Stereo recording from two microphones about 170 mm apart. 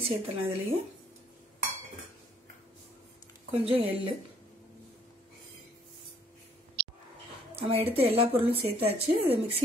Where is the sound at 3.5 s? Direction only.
35° right (ahead or behind).